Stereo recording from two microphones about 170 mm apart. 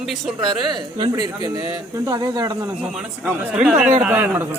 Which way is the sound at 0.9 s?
25° right (ahead or behind).